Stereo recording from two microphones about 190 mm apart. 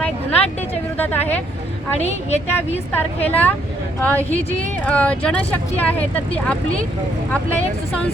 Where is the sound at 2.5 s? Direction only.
10° left (ahead or behind).